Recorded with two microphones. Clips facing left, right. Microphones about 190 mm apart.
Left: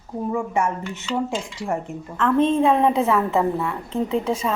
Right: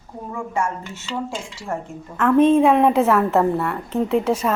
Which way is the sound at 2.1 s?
10° right (ahead or behind).